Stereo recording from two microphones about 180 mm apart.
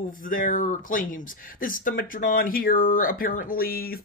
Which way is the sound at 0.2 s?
50° left (ahead or behind).